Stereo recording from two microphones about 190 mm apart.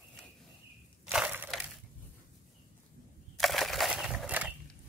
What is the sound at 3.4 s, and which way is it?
Crushing, centre (ahead or behind).